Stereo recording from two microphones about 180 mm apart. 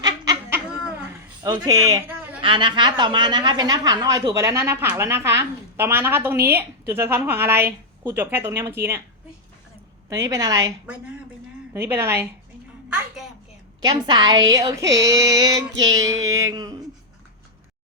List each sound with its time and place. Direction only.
0.0 s a sound: 20° right (ahead or behind)
1.5 s a woman's voice: 20° right (ahead or behind)
10.1 s a woman's voice: 15° right (ahead or behind)
11.7 s a woman's voice: 15° right (ahead or behind)
12.9 s a sound: centre (ahead or behind)
13.8 s a woman's voice: 25° right (ahead or behind)